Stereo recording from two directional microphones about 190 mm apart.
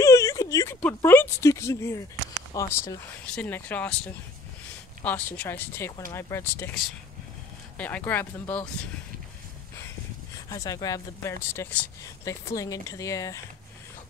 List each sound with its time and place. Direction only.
0.0 s a sound: 15° left (ahead or behind)
2.5 s speech: 15° left (ahead or behind)
10.5 s speech: 20° left (ahead or behind)